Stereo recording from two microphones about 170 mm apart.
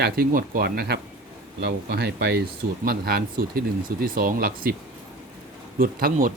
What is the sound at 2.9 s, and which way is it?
Speech, 65° right (ahead or behind).